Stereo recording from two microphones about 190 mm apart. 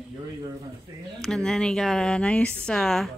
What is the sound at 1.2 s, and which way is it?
Speech, 5° left (ahead or behind).